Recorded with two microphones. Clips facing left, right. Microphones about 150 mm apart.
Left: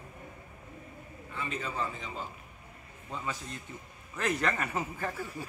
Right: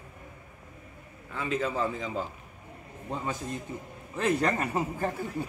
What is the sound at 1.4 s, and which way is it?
Speech, 90° right.